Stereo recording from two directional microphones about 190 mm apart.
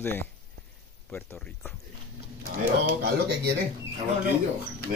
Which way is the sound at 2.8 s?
55° right (ahead or behind).